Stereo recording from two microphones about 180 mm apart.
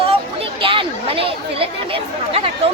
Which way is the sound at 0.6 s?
30° right (ahead or behind).